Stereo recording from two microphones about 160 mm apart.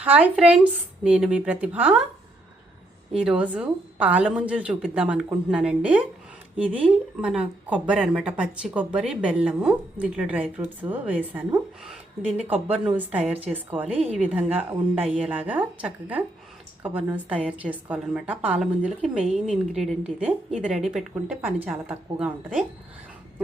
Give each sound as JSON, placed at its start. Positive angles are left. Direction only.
{"t": 0.0, "sound": "speech", "side_deg": -10}
{"t": 3.2, "sound": "speech", "side_deg": -5}
{"t": 7.2, "sound": "speech", "side_deg": -5}
{"t": 12.6, "sound": "a woman's voice", "side_deg": -10}